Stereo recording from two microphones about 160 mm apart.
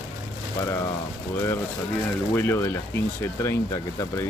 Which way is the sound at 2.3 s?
15° left (ahead or behind).